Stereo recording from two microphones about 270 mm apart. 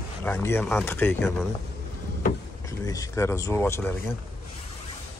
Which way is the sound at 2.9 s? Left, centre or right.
Centre.